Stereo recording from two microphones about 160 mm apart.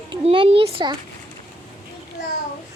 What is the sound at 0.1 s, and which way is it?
Speech, 35° right (ahead or behind).